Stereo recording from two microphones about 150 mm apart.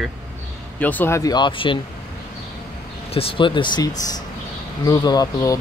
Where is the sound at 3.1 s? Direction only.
35° left (ahead or behind).